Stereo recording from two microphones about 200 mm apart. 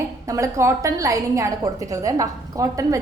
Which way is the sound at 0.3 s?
15° right (ahead or behind).